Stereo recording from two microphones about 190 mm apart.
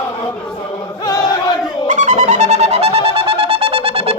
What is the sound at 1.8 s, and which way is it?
Music, 40° right (ahead or behind).